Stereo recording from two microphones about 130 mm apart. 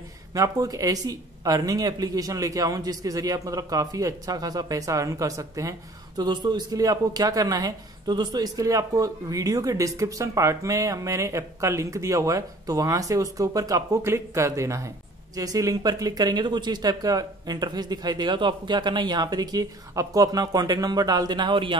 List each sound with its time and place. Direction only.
0.3 s speech: 30° right (ahead or behind)